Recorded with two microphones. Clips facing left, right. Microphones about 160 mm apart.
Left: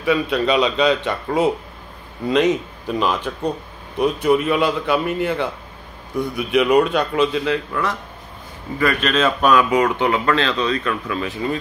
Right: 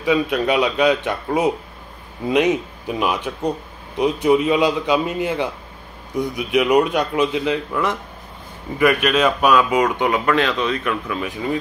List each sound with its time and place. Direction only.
0.0 s a man's voice: 15° right (ahead or behind)